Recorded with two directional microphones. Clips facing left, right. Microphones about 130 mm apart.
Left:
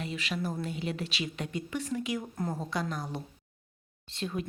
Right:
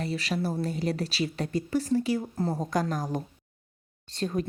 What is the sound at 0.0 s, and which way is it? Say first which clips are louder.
Speech: right 5 dB; 40° right (ahead or behind).